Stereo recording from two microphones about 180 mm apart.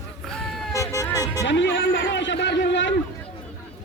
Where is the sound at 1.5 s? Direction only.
85° left.